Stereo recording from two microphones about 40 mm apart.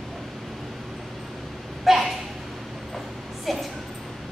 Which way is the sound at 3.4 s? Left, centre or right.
Centre.